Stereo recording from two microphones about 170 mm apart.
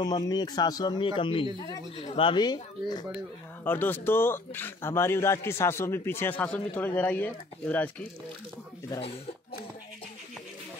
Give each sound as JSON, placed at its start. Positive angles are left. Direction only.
{"t": 0.0, "sound": "speech", "side_deg": 20}
{"t": 3.6, "sound": "speech", "side_deg": 10}
{"t": 6.7, "sound": "speech", "side_deg": 20}